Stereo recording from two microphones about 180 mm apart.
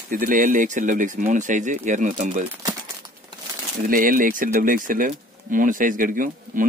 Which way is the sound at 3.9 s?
50° right (ahead or behind).